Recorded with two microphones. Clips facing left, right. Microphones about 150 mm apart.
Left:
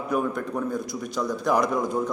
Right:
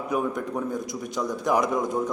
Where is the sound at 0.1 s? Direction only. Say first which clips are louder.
Left 1 dB; 15° right (ahead or behind).